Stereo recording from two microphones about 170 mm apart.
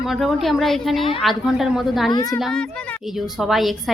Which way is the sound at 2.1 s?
25° left (ahead or behind).